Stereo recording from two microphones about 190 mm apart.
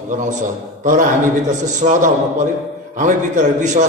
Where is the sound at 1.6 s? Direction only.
40° right (ahead or behind).